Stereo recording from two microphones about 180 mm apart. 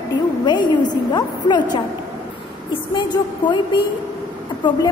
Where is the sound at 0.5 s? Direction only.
25° left (ahead or behind).